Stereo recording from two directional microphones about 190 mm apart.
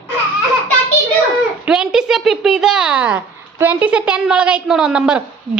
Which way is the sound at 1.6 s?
5° right (ahead or behind).